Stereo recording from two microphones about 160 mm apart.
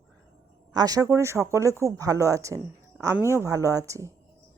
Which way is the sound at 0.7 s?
25° right (ahead or behind).